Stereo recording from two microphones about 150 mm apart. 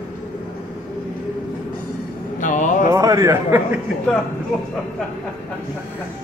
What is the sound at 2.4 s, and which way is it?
Speech, 60° left (ahead or behind).